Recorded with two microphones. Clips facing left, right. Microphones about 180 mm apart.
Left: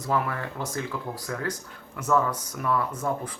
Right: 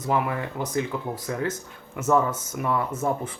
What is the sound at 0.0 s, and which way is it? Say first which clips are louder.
Speech: right 2 dB; 15° right (ahead or behind).